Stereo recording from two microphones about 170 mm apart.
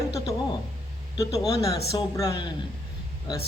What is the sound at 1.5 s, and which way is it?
Speech, 20° left (ahead or behind).